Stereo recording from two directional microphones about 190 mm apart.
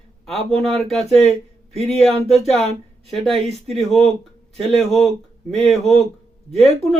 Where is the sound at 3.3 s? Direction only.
30° right (ahead or behind).